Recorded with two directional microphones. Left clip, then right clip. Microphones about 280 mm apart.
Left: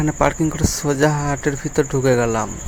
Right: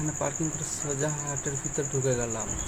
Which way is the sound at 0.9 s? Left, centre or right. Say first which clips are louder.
Left 14 dB; left.